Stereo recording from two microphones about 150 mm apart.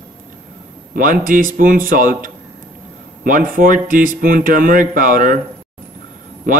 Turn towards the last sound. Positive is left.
turn(degrees=-60)  # may be behind; listen again after turning